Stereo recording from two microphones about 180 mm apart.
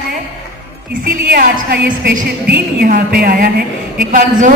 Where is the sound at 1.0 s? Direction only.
55° right (ahead or behind).